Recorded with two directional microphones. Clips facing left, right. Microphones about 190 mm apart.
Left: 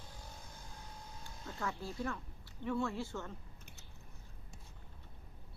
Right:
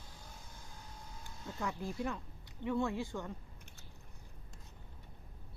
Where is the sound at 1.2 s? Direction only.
15° right (ahead or behind).